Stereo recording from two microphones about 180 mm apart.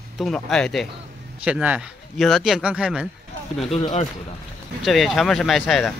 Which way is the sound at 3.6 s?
35° left (ahead or behind).